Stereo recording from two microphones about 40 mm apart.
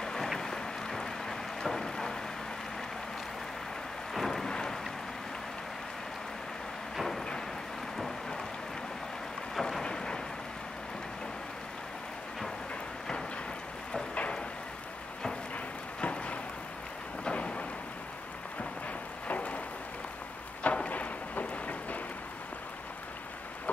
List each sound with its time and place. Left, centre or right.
0.0 s boat: centre
0.4 s rain: centre
4.1 s thunder: centre
4.5 s boat: centre
7.0 s thunder: centre
9.6 s thunder: centre
16.0 s a sound: left
17.2 s thunder: left
19.2 s a sound: left
20.6 s a sound: left